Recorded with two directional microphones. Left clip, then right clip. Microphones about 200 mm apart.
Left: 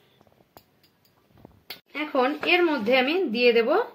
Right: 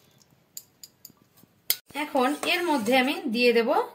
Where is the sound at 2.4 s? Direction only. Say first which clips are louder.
Left 3 dB; 40° left (ahead or behind).